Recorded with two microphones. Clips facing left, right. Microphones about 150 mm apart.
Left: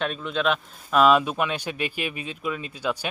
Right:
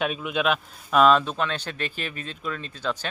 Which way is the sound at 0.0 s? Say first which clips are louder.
Even; 10° right (ahead or behind).